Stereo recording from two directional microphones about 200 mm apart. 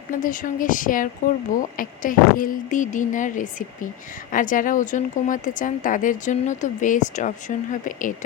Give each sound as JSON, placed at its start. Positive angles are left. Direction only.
{"t": 0.1, "sound": "a woman's voice", "side_deg": 40}